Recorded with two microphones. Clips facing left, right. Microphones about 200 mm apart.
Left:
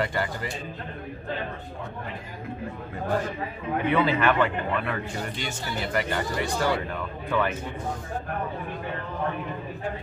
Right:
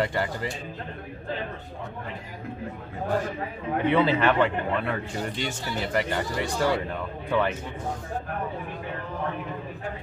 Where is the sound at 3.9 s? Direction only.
25° right (ahead or behind).